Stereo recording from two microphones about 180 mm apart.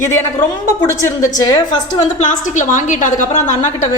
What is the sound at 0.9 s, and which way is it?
Speech, 15° left (ahead or behind).